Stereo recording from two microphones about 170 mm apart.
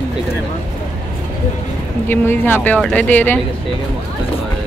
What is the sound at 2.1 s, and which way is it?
Speech, 10° left (ahead or behind).